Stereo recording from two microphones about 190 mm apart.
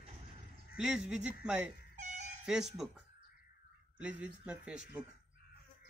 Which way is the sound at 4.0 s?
5° right (ahead or behind).